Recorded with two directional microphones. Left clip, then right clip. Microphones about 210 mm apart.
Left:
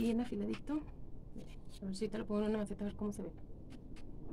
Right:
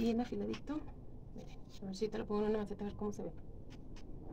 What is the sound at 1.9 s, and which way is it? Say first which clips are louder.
Speech: right 1 dB; 30° left (ahead or behind).